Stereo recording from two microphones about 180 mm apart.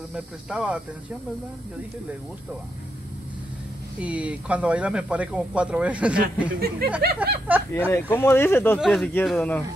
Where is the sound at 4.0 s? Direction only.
5° right (ahead or behind).